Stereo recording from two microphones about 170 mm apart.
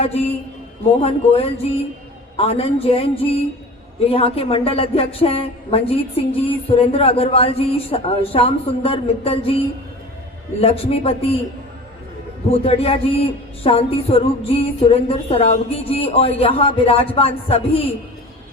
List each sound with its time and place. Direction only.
0.0 s a woman's voice: 35° left (ahead or behind)
12.5 s a woman's voice: 35° left (ahead or behind)